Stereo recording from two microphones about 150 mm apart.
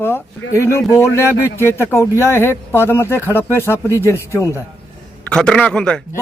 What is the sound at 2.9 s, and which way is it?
Speech, 15° left (ahead or behind).